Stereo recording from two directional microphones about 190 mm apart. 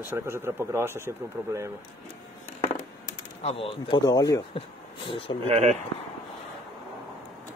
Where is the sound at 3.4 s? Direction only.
30° left (ahead or behind).